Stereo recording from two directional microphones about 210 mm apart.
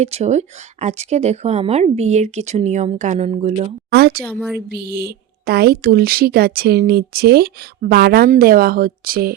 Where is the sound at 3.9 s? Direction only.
50° right (ahead or behind).